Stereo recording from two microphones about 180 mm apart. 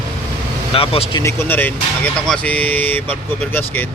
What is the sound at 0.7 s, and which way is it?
Speech, 30° left (ahead or behind).